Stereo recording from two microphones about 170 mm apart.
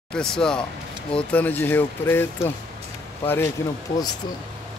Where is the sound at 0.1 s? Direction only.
5° left (ahead or behind).